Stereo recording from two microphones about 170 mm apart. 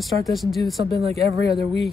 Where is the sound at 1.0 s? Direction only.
35° right (ahead or behind).